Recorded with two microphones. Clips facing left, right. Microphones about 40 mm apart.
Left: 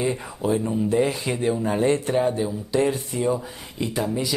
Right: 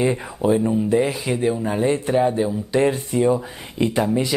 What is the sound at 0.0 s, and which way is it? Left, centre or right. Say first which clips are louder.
Speech: right 5 dB; right.